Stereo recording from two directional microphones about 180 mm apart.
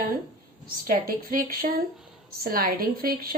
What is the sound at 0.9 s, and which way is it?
A woman's voice, 55° right (ahead or behind).